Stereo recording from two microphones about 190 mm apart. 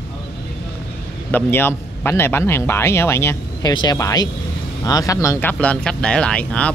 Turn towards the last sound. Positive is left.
turn(degrees=5)  # may be behind; listen again after turning